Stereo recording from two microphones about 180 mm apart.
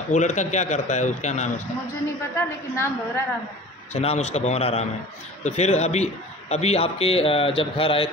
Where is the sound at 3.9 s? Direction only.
35° left (ahead or behind).